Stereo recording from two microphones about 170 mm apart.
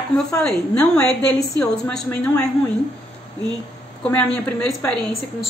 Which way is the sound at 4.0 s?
10° left (ahead or behind).